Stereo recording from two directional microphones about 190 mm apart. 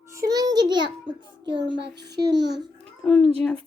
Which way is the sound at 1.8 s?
60° right (ahead or behind).